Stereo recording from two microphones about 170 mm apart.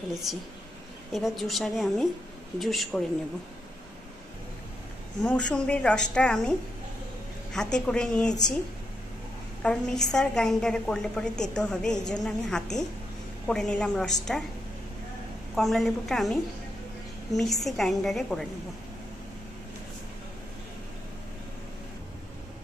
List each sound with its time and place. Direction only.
0.1 s a woman's voice: centre (ahead or behind)
5.2 s a woman's voice: 5° left (ahead or behind)
7.5 s a woman's voice: 5° left (ahead or behind)
9.6 s a woman's voice: 5° left (ahead or behind)
15.5 s a woman's voice: centre (ahead or behind)